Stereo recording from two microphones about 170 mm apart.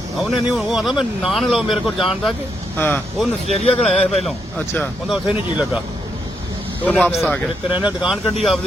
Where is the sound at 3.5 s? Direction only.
40° left (ahead or behind).